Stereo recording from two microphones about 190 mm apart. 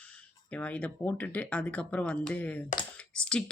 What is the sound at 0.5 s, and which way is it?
Speech, 5° left (ahead or behind).